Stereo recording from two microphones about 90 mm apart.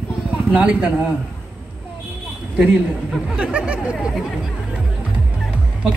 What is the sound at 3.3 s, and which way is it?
Speech, 10° right (ahead or behind).